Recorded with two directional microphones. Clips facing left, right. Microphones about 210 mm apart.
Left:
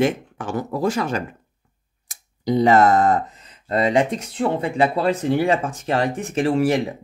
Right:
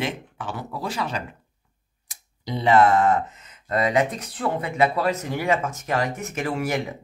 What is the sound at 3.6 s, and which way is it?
Speech, 30° left (ahead or behind).